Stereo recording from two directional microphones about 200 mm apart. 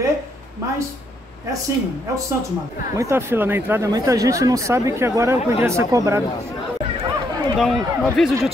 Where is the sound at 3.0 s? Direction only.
10° right (ahead or behind).